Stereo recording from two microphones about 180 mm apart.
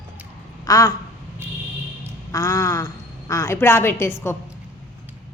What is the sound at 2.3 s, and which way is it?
A woman's voice, 15° left (ahead or behind).